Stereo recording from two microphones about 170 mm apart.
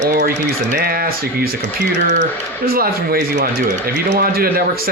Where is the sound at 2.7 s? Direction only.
60° right (ahead or behind).